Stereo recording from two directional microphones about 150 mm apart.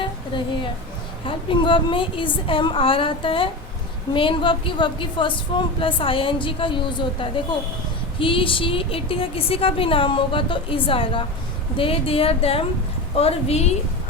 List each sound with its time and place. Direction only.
0.3 s a woman's voice: 35° left (ahead or behind)